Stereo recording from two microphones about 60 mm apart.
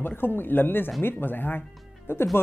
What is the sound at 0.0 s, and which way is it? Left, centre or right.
Speech, left.